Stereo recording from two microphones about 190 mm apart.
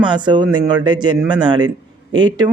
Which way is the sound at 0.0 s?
25° right (ahead or behind).